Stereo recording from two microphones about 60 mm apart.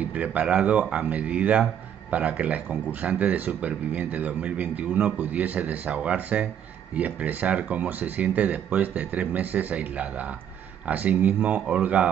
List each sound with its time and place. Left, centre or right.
0.0 s speech: right